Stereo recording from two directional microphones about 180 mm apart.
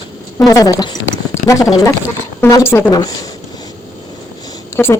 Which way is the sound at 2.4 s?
15° left (ahead or behind).